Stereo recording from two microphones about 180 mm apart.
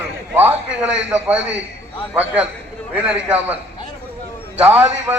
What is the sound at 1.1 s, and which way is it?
Speech, 10° right (ahead or behind).